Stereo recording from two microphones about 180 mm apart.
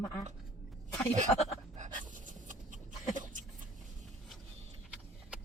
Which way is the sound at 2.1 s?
45° right (ahead or behind).